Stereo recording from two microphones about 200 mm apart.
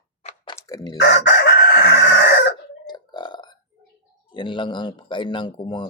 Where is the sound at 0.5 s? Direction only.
15° left (ahead or behind).